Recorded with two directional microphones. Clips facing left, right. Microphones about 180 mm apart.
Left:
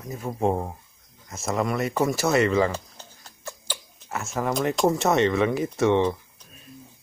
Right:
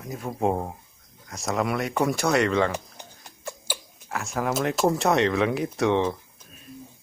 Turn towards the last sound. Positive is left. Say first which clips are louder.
# left 2 dB
turn(degrees=0)  # may be behind; listen again after turning